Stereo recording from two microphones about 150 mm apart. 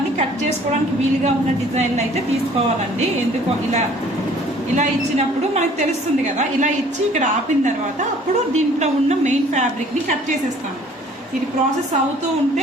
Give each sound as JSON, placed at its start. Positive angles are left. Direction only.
{"t": 1.7, "sound": "a woman's voice", "side_deg": -50}
{"t": 4.8, "sound": "a woman's voice", "side_deg": -50}
{"t": 7.1, "sound": "a woman's voice", "side_deg": -55}